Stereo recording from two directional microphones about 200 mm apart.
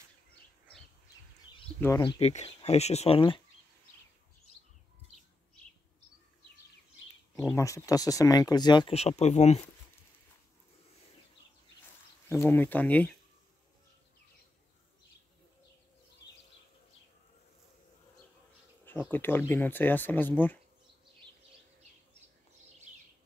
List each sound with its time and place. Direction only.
2.0 s speech: 25° left (ahead or behind)
7.5 s speech: 15° left (ahead or behind); by 9.7 s 35° left (ahead or behind)
12.3 s speech: 10° left (ahead or behind)
18.9 s speech: 10° left (ahead or behind)